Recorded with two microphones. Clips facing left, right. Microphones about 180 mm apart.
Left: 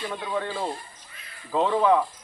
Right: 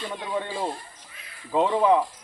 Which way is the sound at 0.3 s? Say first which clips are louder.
Right 1 dB; 20° right (ahead or behind).